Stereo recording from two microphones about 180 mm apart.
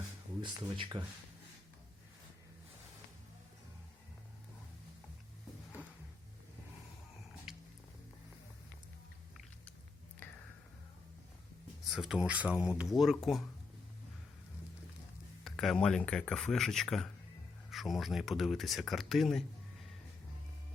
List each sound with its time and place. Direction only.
0.4 s speech: 25° right (ahead or behind)
7.5 s music: 5° right (ahead or behind)
11.9 s speech: centre (ahead or behind)
15.4 s speech: centre (ahead or behind)